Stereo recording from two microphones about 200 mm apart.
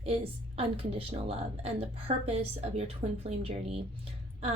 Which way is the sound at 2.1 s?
30° right (ahead or behind).